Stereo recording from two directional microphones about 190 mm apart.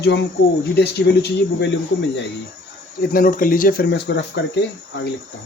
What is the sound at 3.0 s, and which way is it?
Speech, 45° left (ahead or behind).